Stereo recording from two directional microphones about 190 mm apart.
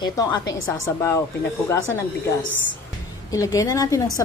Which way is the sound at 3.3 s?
15° left (ahead or behind).